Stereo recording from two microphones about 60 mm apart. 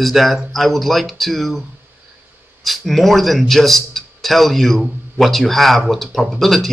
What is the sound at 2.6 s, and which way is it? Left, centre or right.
A man's voice, centre.